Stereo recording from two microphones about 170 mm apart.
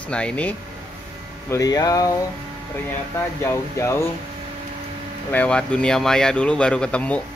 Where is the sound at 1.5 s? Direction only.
20° left (ahead or behind).